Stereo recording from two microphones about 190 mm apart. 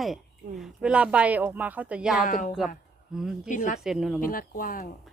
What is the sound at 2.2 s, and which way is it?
Speech, 45° left (ahead or behind).